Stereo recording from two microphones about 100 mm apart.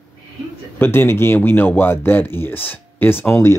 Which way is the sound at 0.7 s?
20° left (ahead or behind).